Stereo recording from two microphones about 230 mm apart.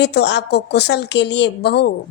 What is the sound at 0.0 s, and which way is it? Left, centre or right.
A woman's voice, left.